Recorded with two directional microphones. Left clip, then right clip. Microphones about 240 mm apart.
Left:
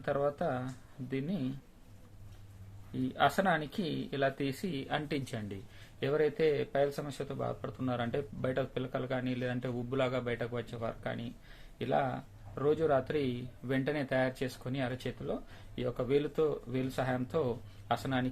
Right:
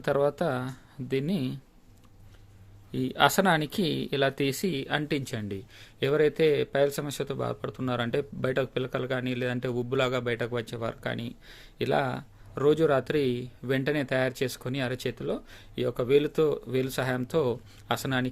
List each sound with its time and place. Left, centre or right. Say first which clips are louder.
0.0 s speech: right 7 dB; right
2.9 s speech: right 6 dB; right